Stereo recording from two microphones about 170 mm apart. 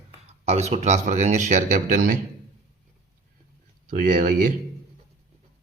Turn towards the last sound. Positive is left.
turn(degrees=-50)  # may be behind; listen again after turning